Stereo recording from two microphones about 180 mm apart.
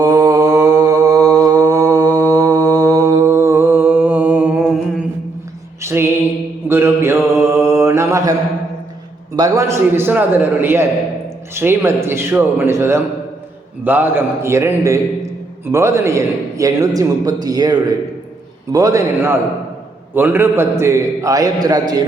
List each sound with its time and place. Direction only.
0.0 s mantra: 20° right (ahead or behind)
2.0 s mantra: 10° left (ahead or behind)
2.7 s mantra: 20° right (ahead or behind)
5.8 s music: 15° right (ahead or behind)
6.7 s mantra: 15° right (ahead or behind)
9.3 s a man's voice: 20° right (ahead or behind)